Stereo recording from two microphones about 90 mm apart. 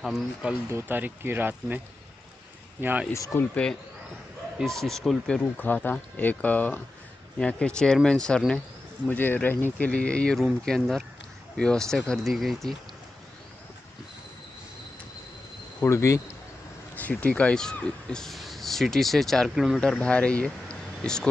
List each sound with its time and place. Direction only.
0.0 s speech: centre (ahead or behind)
0.7 s speech: 25° right (ahead or behind)
2.8 s speech: 20° right (ahead or behind)
3.1 s speech: 35° left (ahead or behind)
3.3 s speech: 15° left (ahead or behind)
5.6 s speech: 20° left (ahead or behind)
9.0 s speech: 20° left (ahead or behind); by 12.7 s centre (ahead or behind)
15.8 s speech: 35° left (ahead or behind)
16.9 s speech: 15° left (ahead or behind); by 19.8 s 5° right (ahead or behind)
19.8 s speech: 10° left (ahead or behind)